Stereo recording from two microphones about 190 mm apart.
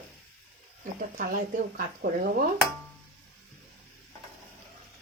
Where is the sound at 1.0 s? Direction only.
45° right (ahead or behind).